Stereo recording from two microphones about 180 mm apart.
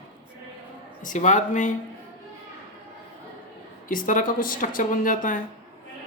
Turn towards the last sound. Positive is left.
turn(degrees=50)  # may be behind; listen again after turning